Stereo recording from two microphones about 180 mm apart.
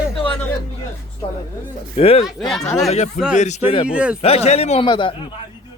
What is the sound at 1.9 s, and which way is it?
Speech, 35° left (ahead or behind).